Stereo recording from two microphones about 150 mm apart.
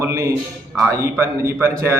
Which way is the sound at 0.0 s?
20° right (ahead or behind).